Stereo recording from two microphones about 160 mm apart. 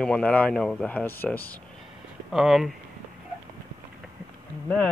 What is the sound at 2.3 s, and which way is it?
Speech, centre (ahead or behind).